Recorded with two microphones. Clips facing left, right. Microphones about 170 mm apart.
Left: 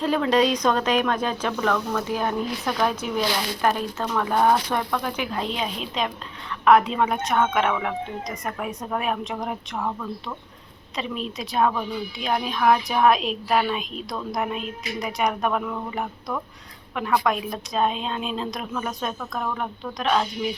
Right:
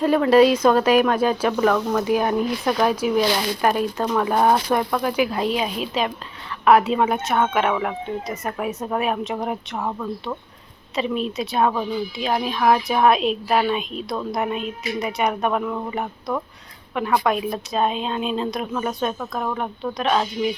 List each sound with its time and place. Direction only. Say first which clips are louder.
0.0 s speech: right 6 dB; 5° right (ahead or behind)
1.7 s speech: right 5 dB; 20° right (ahead or behind)
9.8 s speech: right 3 dB; 20° right (ahead or behind)
10.9 s speech: right 6 dB; centre (ahead or behind)
20.0 s speech: right 2 dB; centre (ahead or behind)